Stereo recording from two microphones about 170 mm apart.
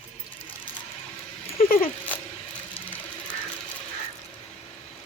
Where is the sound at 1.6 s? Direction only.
55° left (ahead or behind).